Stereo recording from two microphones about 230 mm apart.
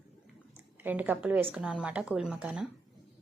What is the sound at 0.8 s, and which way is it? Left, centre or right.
A woman's voice, centre.